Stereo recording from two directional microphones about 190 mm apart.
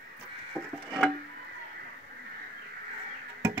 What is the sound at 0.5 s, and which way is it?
Music, centre (ahead or behind).